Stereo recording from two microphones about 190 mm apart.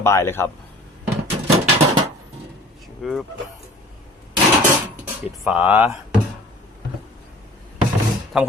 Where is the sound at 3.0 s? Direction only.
Centre (ahead or behind).